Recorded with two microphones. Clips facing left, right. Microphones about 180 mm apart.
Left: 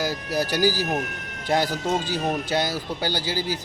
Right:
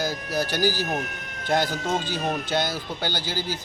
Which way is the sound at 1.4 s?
10° left (ahead or behind).